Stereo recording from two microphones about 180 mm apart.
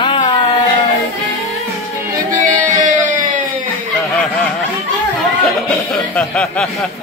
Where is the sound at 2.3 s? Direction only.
45° right (ahead or behind).